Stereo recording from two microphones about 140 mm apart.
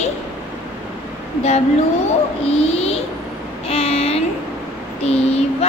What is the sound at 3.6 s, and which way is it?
Child singing, 45° left (ahead or behind).